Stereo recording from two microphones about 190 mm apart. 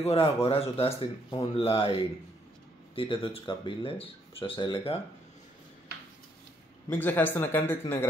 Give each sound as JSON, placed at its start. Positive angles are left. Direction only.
{"t": 0.0, "sound": "speech", "side_deg": 30}
{"t": 6.9, "sound": "speech", "side_deg": 10}